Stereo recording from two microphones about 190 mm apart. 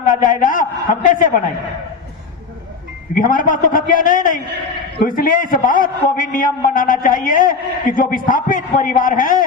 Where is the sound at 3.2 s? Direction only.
45° left (ahead or behind).